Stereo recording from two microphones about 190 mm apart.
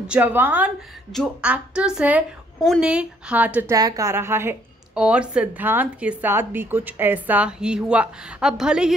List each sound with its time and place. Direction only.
0.0 s a woman's voice: 5° right (ahead or behind)
3.7 s a woman's voice: 20° right (ahead or behind)